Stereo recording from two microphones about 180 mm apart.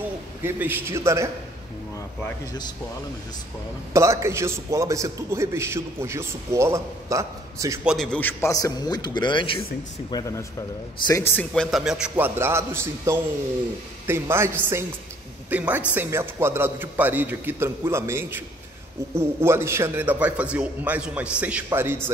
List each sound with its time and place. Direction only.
0.4 s a man's voice: 10° right (ahead or behind)
3.9 s a man's voice: 15° right (ahead or behind)
7.8 s a man's voice: centre (ahead or behind)